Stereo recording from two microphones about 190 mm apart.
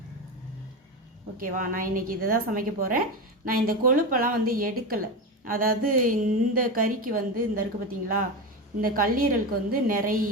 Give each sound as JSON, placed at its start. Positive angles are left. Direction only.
{"t": 1.4, "sound": "a woman's voice", "side_deg": -45}
{"t": 8.8, "sound": "a woman's voice", "side_deg": -50}